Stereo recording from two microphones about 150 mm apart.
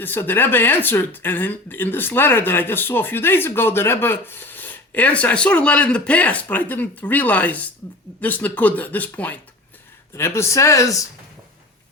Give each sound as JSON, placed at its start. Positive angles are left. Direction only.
{"t": 0.0, "sound": "speech", "side_deg": 15}